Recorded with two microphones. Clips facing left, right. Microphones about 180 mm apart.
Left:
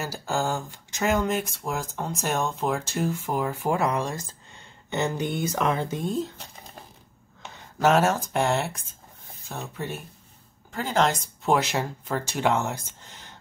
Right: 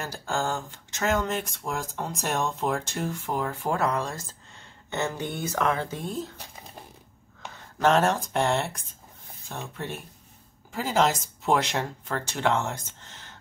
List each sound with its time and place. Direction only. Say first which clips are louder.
0.0 s speech: left 2 dB; 10° left (ahead or behind)
7.8 s speech: left 1 dB; 5° left (ahead or behind)